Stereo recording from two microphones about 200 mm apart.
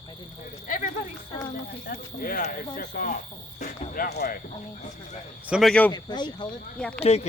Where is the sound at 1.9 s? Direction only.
45° left (ahead or behind).